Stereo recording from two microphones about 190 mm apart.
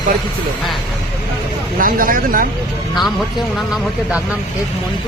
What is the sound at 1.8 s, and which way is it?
Speech, 45° right (ahead or behind).